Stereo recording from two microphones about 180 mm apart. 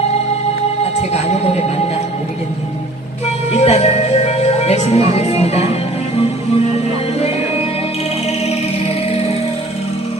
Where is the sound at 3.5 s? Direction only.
35° left (ahead or behind).